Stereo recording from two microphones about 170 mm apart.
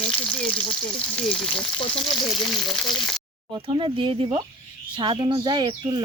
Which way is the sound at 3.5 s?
30° right (ahead or behind).